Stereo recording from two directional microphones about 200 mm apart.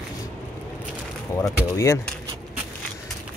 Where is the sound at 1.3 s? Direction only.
15° left (ahead or behind).